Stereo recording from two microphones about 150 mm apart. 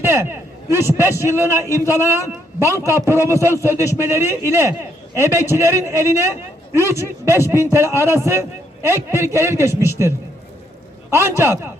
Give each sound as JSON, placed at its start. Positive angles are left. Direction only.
{"t": 0.0, "sound": "a man's voice", "side_deg": -15}